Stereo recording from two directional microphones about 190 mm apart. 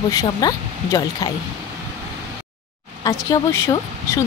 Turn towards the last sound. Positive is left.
turn(degrees=15)  # may be behind; listen again after turning